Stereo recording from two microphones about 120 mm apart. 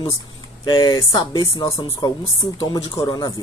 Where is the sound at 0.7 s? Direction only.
35° left (ahead or behind).